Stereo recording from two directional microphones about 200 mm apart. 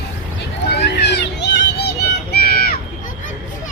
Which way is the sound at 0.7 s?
55° left (ahead or behind).